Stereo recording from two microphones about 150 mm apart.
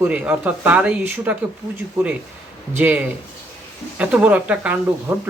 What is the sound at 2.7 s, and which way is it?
Speech, 10° right (ahead or behind).